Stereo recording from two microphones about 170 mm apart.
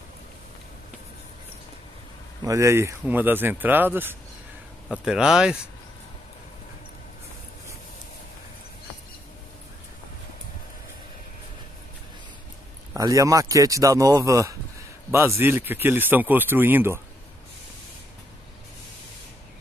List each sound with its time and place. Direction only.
2.4 s speech: 15° right (ahead or behind)
4.8 s speech: centre (ahead or behind)
12.9 s speech: 20° right (ahead or behind)